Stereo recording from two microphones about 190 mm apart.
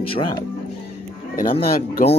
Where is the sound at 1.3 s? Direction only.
50° left (ahead or behind).